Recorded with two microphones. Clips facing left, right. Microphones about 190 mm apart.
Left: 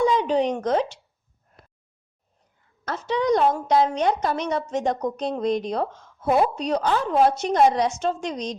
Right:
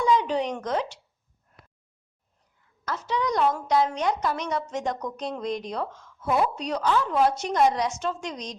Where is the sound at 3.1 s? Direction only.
25° left (ahead or behind).